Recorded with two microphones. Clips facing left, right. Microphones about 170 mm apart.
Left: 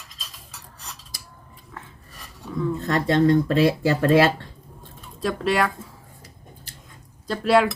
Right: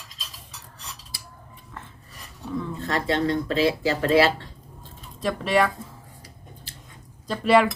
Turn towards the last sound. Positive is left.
turn(degrees=0)  # may be behind; listen again after turning